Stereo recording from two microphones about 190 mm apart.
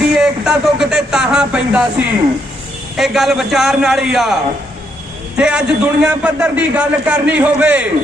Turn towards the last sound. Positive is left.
turn(degrees=-5)  # may be behind; listen again after turning